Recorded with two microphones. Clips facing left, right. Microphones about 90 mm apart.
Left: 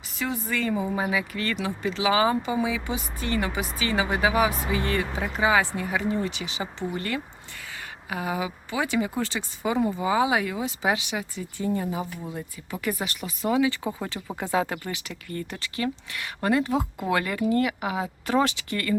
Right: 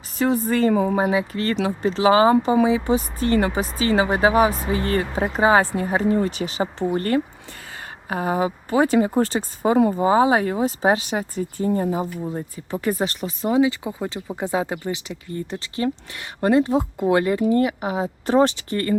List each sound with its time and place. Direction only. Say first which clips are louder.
0.2 s speech: right 9 dB; 40° right (ahead or behind)
0.7 s speech: right 8 dB; 55° right (ahead or behind)
0.9 s speech: right 6 dB; 35° right (ahead or behind)